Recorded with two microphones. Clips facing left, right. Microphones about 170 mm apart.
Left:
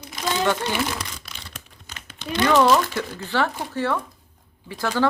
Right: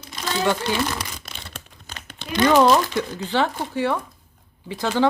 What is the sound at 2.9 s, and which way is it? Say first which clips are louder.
Speech: right 3 dB; 20° right (ahead or behind).